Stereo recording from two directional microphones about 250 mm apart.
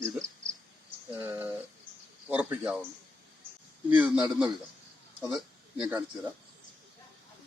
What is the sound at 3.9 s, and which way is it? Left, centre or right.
Speech, centre.